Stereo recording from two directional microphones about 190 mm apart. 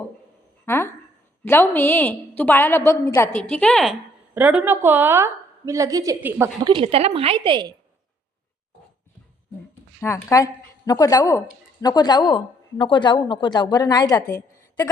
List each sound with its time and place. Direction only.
0.6 s a sound: 10° left (ahead or behind)
1.5 s a woman's voice: 10° left (ahead or behind)
4.4 s a woman's voice: 10° right (ahead or behind)
6.7 s a woman's voice: 30° right (ahead or behind)
10.0 s a woman's voice: 15° left (ahead or behind)
14.3 s a sound: 10° left (ahead or behind)